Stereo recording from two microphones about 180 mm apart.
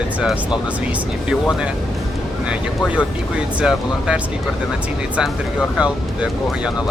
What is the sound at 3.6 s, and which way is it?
Speech, 5° right (ahead or behind).